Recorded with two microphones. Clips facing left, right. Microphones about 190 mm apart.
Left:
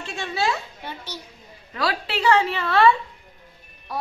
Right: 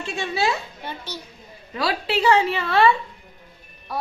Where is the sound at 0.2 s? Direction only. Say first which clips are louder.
Right 1 dB; 5° right (ahead or behind).